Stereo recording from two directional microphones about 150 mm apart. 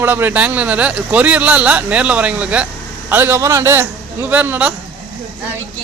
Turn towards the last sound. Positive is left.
turn(degrees=-10)  # may be behind; listen again after turning